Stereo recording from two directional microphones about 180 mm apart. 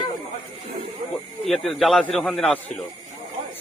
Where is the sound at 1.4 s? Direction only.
Centre (ahead or behind).